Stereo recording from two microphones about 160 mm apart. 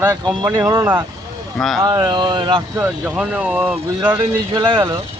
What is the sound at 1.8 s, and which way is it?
Speech, 25° right (ahead or behind).